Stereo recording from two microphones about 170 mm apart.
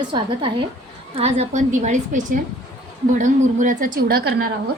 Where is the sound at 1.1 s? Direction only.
40° right (ahead or behind); by 4.3 s 60° right (ahead or behind).